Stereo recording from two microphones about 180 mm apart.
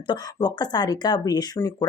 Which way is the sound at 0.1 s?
25° left (ahead or behind).